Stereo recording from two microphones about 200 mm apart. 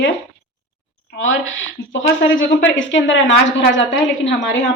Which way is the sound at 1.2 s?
75° left (ahead or behind).